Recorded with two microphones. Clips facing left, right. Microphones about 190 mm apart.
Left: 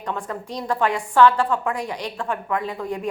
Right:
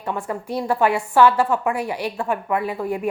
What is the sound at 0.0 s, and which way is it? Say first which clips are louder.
A woman's voice: right 2 dB; 10° right (ahead or behind).